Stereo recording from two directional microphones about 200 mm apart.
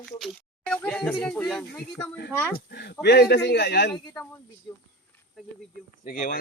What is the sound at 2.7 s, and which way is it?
A man's voice, 55° left (ahead or behind).